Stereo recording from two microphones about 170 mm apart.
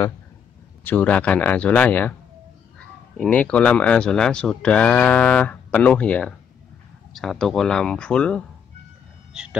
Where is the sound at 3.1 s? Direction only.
5° left (ahead or behind).